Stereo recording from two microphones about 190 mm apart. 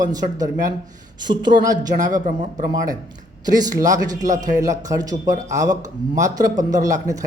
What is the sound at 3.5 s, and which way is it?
Speech, 20° right (ahead or behind).